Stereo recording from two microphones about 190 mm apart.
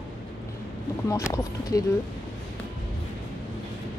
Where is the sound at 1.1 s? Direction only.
15° left (ahead or behind).